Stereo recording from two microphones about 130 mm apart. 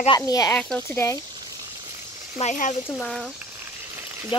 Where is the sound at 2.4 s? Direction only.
65° left (ahead or behind).